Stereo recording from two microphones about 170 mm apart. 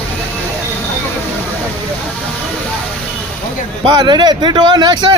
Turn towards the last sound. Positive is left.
turn(degrees=-25)  # may be behind; listen again after turning